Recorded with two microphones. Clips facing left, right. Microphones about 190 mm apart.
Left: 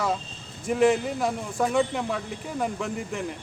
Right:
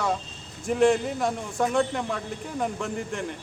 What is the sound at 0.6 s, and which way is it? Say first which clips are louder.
A man's voice: even; centre (ahead or behind).